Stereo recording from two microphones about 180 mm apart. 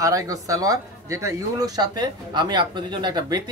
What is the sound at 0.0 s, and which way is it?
Speech, 20° right (ahead or behind).